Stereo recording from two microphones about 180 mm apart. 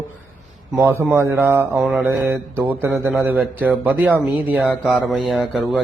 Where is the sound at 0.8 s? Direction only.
10° right (ahead or behind).